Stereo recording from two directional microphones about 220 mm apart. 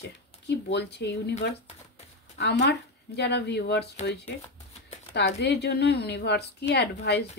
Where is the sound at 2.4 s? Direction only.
50° left (ahead or behind).